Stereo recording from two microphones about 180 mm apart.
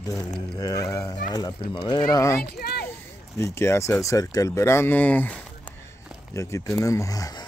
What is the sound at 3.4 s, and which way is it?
Speech, 15° left (ahead or behind).